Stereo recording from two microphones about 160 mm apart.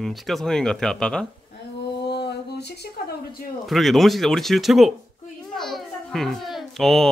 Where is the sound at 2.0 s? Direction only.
90° left.